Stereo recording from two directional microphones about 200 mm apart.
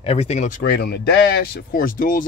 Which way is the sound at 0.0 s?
30° left (ahead or behind).